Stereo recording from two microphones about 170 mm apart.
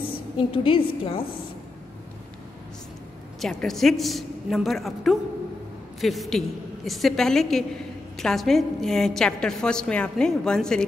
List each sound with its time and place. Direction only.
0.4 s a woman's voice: 30° left (ahead or behind)
3.3 s a woman's voice: centre (ahead or behind)